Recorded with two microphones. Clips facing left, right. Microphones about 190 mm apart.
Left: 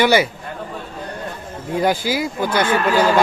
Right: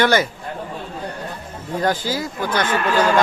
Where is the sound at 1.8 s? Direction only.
10° left (ahead or behind).